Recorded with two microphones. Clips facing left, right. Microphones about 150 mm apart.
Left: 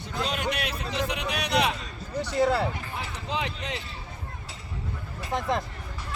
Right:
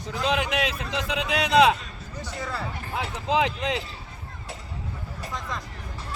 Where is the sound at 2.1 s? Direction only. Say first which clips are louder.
Left 10 dB; 70° left (ahead or behind).